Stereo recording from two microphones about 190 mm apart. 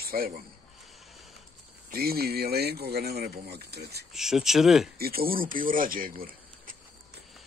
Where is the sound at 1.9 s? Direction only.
55° right (ahead or behind).